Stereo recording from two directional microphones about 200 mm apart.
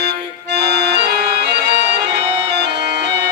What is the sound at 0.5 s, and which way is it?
Accordion, 55° right (ahead or behind).